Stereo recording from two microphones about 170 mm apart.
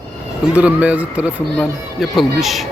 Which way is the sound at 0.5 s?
10° right (ahead or behind).